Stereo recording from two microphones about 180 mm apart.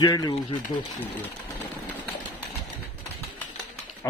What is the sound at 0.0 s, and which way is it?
Speech, 25° left (ahead or behind).